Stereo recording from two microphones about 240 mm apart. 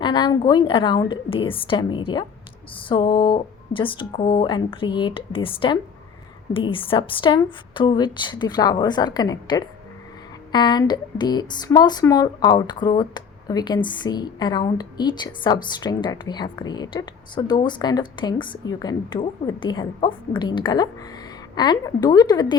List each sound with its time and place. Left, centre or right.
0.0 s a woman's voice: centre